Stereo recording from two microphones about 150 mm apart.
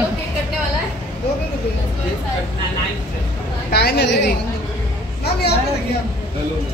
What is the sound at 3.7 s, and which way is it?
Speech, 90° left.